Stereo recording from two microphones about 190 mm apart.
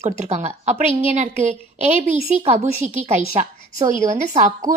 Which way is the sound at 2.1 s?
35° right (ahead or behind).